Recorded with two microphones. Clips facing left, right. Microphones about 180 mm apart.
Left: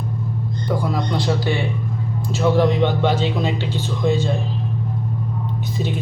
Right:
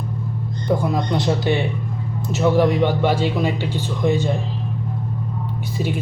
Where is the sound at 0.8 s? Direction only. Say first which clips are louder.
Right 1 dB; 20° right (ahead or behind).